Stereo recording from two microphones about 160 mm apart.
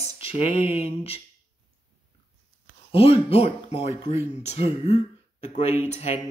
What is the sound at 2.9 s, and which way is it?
Speech, 35° left (ahead or behind).